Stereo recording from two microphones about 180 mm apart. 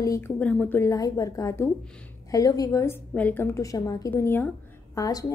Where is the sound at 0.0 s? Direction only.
20° left (ahead or behind).